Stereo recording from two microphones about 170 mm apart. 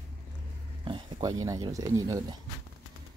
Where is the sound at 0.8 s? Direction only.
30° right (ahead or behind).